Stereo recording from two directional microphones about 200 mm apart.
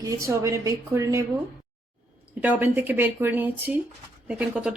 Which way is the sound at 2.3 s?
10° right (ahead or behind).